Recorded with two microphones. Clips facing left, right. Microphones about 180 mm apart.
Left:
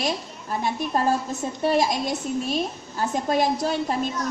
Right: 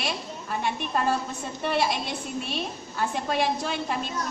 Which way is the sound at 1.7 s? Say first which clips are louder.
Left 3 dB; 40° left (ahead or behind).